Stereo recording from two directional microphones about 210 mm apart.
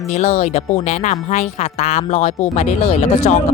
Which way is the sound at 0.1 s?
30° left (ahead or behind).